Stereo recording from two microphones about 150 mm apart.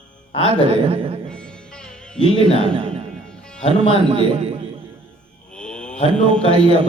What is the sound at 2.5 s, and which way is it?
Speech, 35° right (ahead or behind).